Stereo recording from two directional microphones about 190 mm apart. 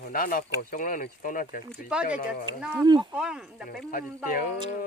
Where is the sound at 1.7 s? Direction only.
5° right (ahead or behind).